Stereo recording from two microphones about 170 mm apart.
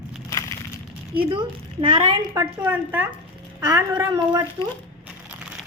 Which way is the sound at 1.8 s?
30° right (ahead or behind).